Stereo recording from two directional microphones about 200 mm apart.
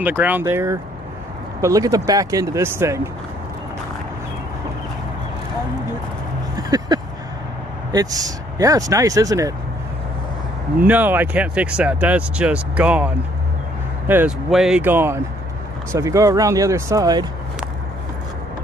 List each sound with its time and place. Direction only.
0.0 s speech: 10° right (ahead or behind)
6.5 s a sound: 20° right (ahead or behind)
7.9 s speech: 20° right (ahead or behind)
10.9 s speech: 10° right (ahead or behind)